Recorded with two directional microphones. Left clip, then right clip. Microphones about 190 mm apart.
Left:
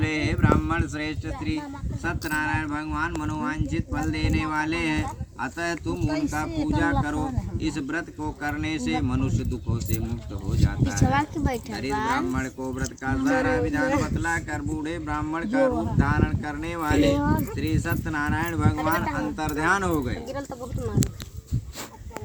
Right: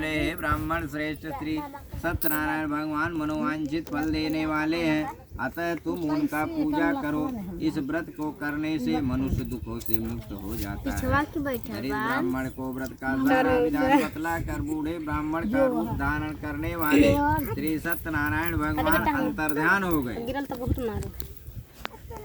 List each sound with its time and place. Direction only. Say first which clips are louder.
0.0 s speech: left 2 dB; 10° right (ahead or behind)
11.1 s speech: right 2 dB; 35° left (ahead or behind)
12.3 s speech: left 2 dB; 5° right (ahead or behind)